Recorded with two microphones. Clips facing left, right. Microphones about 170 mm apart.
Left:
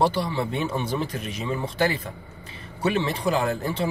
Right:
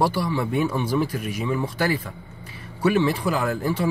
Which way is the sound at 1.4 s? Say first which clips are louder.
Even; 20° left (ahead or behind).